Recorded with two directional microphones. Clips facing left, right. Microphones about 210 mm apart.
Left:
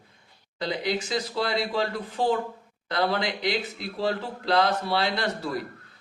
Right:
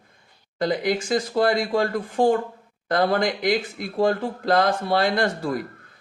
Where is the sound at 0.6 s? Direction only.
50° right (ahead or behind).